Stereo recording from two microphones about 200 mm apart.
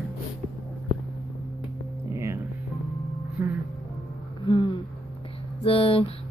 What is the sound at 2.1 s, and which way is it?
Music, 15° right (ahead or behind).